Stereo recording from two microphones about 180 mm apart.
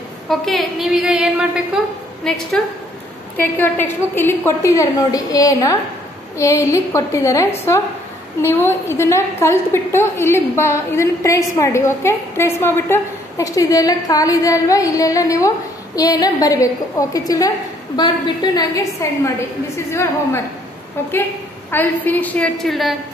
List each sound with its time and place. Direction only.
0.3 s a woman's voice: centre (ahead or behind); by 19.3 s 20° left (ahead or behind)
21.6 s a woman's voice: 10° left (ahead or behind)